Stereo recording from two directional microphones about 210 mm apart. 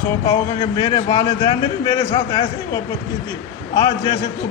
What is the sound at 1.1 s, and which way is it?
Speech, 15° left (ahead or behind).